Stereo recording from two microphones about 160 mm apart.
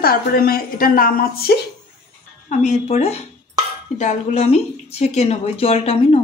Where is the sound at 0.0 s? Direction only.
70° left (ahead or behind).